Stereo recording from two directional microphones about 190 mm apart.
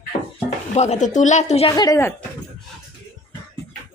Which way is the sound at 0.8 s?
40° left (ahead or behind).